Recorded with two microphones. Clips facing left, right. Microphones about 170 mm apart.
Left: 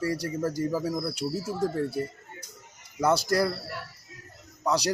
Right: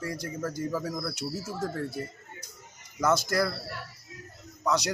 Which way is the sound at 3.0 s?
35° left (ahead or behind).